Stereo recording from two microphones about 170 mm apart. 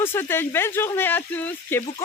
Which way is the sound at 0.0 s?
15° left (ahead or behind).